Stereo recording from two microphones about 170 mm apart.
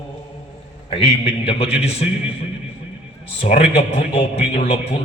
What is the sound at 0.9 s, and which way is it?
A man's voice, 35° left (ahead or behind).